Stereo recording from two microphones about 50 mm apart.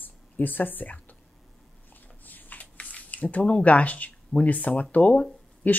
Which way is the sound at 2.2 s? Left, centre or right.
Left.